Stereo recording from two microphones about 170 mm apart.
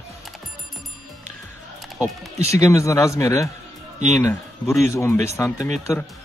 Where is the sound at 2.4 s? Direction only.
20° left (ahead or behind).